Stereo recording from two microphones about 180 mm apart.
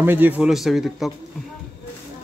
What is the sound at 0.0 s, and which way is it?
A man's voice, 10° right (ahead or behind).